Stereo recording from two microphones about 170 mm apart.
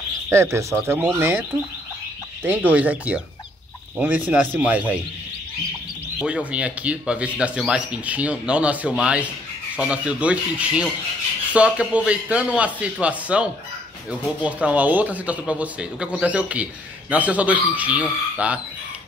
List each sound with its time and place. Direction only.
0.3 s speech: 15° right (ahead or behind)
2.4 s speech: 10° right (ahead or behind)
6.1 s speech: 5° right (ahead or behind)